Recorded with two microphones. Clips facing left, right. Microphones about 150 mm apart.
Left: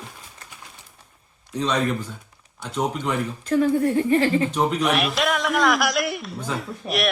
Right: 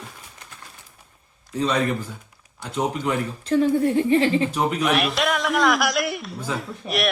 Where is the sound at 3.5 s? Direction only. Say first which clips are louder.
Right 1 dB; 25° right (ahead or behind).